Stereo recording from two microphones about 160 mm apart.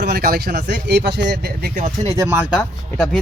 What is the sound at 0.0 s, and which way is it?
Speech, 70° right (ahead or behind).